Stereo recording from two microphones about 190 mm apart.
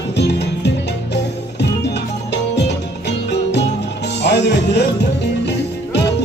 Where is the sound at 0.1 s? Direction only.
65° left (ahead or behind).